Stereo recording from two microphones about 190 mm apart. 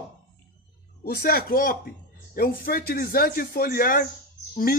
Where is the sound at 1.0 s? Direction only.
50° left (ahead or behind).